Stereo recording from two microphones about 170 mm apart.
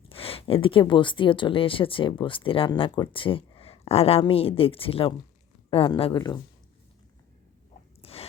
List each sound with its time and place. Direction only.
0.1 s speech: 35° left (ahead or behind)
8.0 s biting: 35° left (ahead or behind)